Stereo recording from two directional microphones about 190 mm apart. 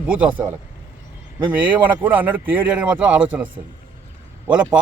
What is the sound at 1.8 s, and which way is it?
A man's voice, 10° right (ahead or behind).